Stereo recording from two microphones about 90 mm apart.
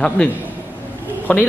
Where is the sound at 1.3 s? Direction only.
15° left (ahead or behind).